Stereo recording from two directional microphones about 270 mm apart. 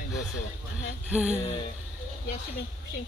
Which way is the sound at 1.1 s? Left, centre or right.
Centre.